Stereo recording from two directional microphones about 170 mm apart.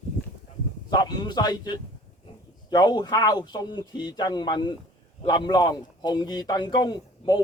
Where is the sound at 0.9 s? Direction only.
25° left (ahead or behind).